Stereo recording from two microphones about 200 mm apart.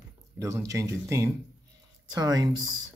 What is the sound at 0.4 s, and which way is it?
Speech, 15° right (ahead or behind).